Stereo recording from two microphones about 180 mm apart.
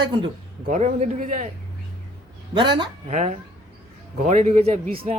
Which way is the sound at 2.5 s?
25° right (ahead or behind).